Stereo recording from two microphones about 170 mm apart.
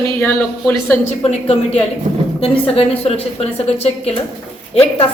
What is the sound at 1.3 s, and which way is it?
A woman's voice, 40° left (ahead or behind).